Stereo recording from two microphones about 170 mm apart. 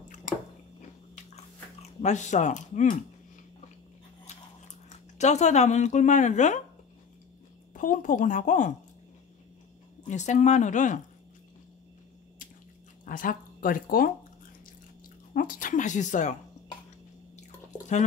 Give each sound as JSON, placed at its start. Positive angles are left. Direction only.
{"t": 0.3, "sound": "chewing", "side_deg": 50}
{"t": 1.1, "sound": "chewing", "side_deg": 40}
{"t": 4.8, "sound": "speech", "side_deg": 45}
{"t": 7.7, "sound": "speech", "side_deg": 50}
{"t": 10.0, "sound": "speech", "side_deg": 45}
{"t": 13.0, "sound": "speech", "side_deg": 50}
{"t": 15.3, "sound": "speech", "side_deg": 50}